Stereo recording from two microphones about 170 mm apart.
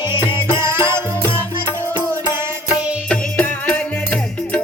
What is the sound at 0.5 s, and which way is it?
Music, 15° right (ahead or behind).